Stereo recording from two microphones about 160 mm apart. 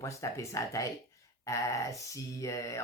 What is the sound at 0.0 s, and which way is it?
Speech, 20° left (ahead or behind).